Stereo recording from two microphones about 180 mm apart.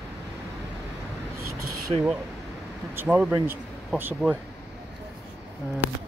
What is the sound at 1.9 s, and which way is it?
Speech, 30° right (ahead or behind).